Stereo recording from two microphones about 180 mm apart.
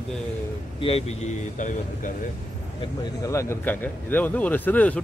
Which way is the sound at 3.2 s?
15° left (ahead or behind).